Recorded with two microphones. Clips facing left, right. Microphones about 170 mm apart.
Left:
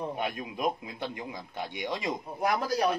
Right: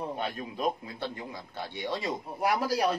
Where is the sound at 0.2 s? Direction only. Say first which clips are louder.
Even; 15° left (ahead or behind).